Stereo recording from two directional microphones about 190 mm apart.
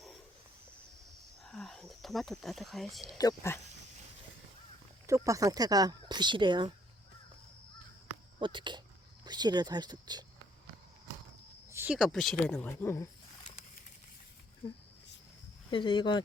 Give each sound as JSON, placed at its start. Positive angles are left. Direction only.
{"t": 1.5, "sound": "speech", "side_deg": 0}
{"t": 3.2, "sound": "speech", "side_deg": 15}
{"t": 5.0, "sound": "speech", "side_deg": -15}
{"t": 8.4, "sound": "speech", "side_deg": -25}
{"t": 11.7, "sound": "speech", "side_deg": -10}
{"t": 15.7, "sound": "speech", "side_deg": 25}